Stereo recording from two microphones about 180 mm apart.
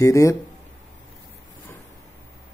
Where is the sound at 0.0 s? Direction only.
15° left (ahead or behind).